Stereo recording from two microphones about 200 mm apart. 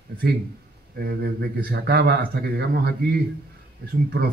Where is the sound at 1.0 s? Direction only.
50° right (ahead or behind).